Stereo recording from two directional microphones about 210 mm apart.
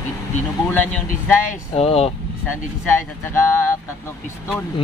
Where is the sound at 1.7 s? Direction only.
30° left (ahead or behind).